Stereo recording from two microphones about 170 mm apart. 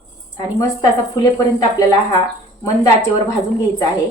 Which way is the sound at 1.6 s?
20° left (ahead or behind).